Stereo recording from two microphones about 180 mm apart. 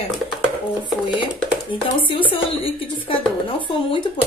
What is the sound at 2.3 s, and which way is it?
Speech, 30° left (ahead or behind).